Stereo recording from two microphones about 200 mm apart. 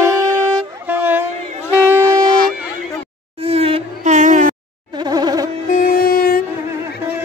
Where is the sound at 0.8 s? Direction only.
10° right (ahead or behind).